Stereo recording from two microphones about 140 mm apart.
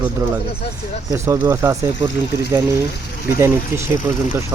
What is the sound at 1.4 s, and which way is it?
Speech, 20° right (ahead or behind).